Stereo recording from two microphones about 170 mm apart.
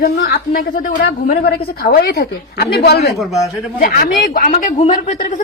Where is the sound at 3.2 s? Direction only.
Centre (ahead or behind).